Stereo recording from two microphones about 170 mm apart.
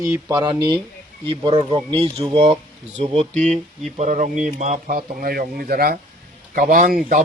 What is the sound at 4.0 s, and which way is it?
Speech, 50° right (ahead or behind).